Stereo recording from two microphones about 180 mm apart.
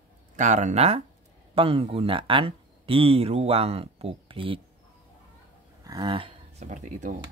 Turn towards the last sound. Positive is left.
turn(degrees=-45)  # may be behind; listen again after turning